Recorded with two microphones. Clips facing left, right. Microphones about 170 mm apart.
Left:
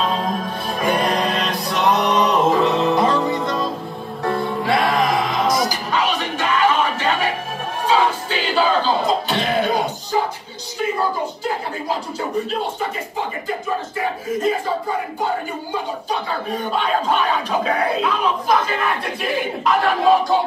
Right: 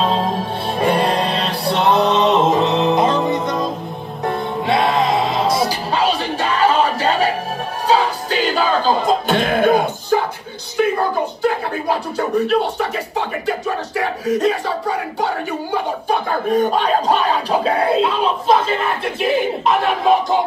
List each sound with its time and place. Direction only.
0.0 s music: 30° right (ahead or behind); by 10.2 s 55° right (ahead or behind)
10.8 s a sound: 60° right (ahead or behind)
13.5 s speech: 75° right (ahead or behind); by 18.8 s 25° right (ahead or behind)